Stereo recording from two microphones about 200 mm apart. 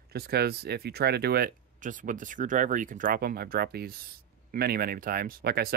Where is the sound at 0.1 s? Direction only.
50° right (ahead or behind).